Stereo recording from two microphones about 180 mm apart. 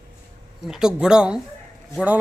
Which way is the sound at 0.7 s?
5° right (ahead or behind).